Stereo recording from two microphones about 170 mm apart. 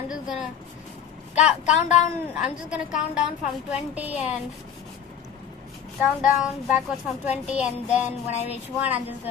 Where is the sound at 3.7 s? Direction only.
10° right (ahead or behind).